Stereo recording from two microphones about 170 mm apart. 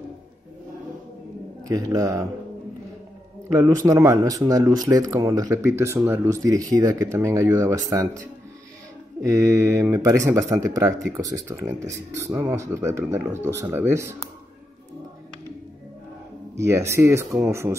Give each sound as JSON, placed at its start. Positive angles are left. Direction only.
{"t": 1.6, "sound": "speech", "side_deg": -20}
{"t": 3.5, "sound": "speech", "side_deg": -20}
{"t": 9.2, "sound": "speech", "side_deg": -20}
{"t": 13.0, "sound": "speech", "side_deg": -5}
{"t": 13.3, "sound": "speech", "side_deg": -15}
{"t": 16.5, "sound": "speech", "side_deg": -15}